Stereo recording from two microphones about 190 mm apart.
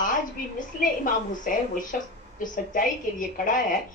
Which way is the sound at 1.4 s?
45° left (ahead or behind).